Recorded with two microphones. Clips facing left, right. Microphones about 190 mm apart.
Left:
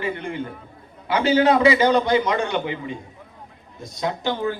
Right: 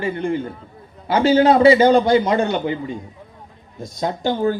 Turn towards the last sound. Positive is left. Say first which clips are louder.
# right 4 dB
turn(degrees=-40)  # may be behind; listen again after turning